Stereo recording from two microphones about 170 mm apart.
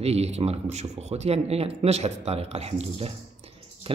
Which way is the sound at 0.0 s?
40° right (ahead or behind).